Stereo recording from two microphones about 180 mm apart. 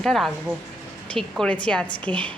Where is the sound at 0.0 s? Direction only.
Centre (ahead or behind).